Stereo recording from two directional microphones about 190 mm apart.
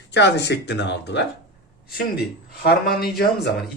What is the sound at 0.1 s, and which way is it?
Speech, 65° left (ahead or behind).